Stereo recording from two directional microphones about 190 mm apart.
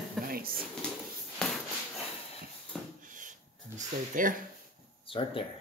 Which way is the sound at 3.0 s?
45° right (ahead or behind).